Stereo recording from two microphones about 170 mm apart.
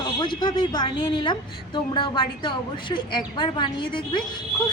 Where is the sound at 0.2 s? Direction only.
25° left (ahead or behind).